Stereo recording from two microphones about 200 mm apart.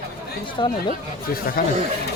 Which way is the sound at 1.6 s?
45° left (ahead or behind).